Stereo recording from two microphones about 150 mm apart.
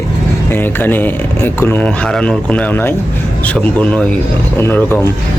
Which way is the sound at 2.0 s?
5° left (ahead or behind).